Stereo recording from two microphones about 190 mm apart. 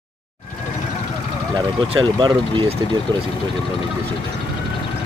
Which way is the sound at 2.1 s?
25° right (ahead or behind).